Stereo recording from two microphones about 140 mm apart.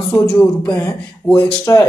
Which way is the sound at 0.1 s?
5° left (ahead or behind).